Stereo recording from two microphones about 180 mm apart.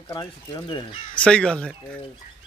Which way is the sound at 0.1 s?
25° left (ahead or behind).